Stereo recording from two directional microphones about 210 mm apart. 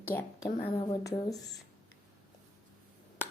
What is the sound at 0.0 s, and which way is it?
A woman's voice, 10° left (ahead or behind).